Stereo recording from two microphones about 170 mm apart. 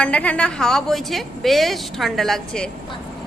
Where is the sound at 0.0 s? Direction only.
10° left (ahead or behind).